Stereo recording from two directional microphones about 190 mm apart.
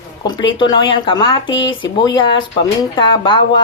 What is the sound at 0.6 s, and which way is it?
Speech, 25° left (ahead or behind).